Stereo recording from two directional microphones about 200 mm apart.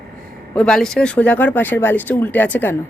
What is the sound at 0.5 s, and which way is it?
Speech, 5° left (ahead or behind).